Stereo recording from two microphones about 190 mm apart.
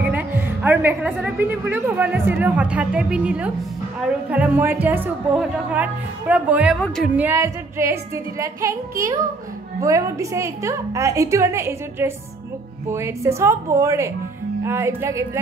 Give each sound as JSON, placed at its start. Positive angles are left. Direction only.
{"t": 0.0, "sound": "a woman's voice", "side_deg": -10}